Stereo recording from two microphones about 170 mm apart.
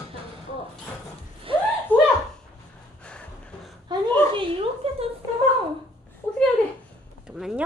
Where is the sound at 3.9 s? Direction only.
25° right (ahead or behind).